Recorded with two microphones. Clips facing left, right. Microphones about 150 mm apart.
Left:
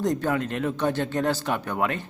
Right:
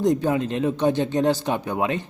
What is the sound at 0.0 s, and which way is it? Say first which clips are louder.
A man's voice: right 4 dB; 15° right (ahead or behind).